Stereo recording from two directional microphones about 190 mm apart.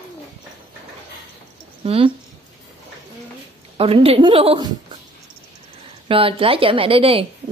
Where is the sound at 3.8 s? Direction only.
30° right (ahead or behind).